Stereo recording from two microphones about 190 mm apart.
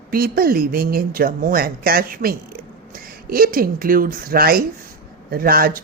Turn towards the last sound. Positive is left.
turn(degrees=-50)  # may be behind; listen again after turning